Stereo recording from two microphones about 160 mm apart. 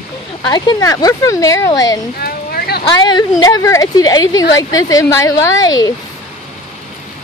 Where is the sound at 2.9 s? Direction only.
30° left (ahead or behind).